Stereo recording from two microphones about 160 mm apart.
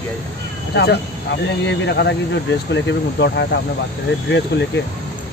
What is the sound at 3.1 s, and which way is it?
Speech, 90° left.